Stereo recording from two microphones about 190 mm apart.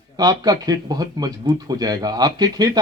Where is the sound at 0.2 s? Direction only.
20° right (ahead or behind).